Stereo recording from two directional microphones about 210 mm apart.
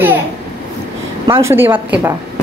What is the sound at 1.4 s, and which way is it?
Speech, 10° right (ahead or behind).